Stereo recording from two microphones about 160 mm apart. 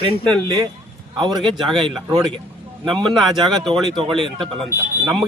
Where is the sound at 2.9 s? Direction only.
5° left (ahead or behind).